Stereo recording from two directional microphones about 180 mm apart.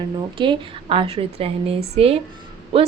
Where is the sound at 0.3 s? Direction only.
25° right (ahead or behind).